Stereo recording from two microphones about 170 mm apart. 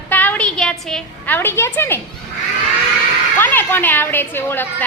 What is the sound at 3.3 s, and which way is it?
A woman's voice, 10° left (ahead or behind).